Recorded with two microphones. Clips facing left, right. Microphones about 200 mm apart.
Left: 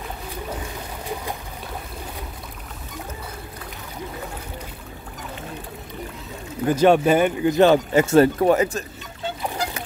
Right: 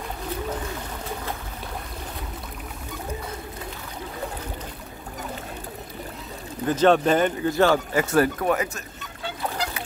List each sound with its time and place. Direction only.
6.7 s speech: 10° left (ahead or behind); by 8.8 s 30° left (ahead or behind)